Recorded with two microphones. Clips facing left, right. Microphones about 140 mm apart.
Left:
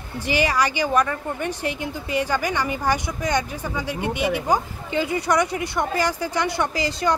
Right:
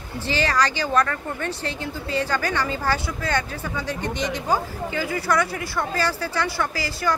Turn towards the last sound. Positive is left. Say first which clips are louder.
# left 3 dB
turn(degrees=20)  # may be behind; listen again after turning